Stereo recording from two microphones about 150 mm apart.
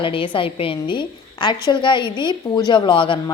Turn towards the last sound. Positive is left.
turn(degrees=35)  # may be behind; listen again after turning